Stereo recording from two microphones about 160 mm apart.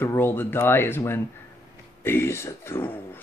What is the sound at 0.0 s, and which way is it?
Speech, 15° left (ahead or behind).